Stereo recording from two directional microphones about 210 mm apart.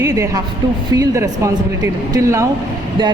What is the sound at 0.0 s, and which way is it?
A woman's voice, 15° right (ahead or behind).